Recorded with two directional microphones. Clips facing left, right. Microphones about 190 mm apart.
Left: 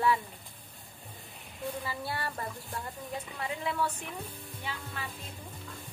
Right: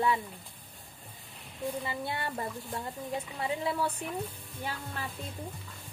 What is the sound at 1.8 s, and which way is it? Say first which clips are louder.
Speech: right 1 dB; 20° right (ahead or behind).